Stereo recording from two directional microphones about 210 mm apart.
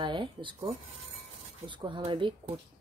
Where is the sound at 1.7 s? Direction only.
25° right (ahead or behind).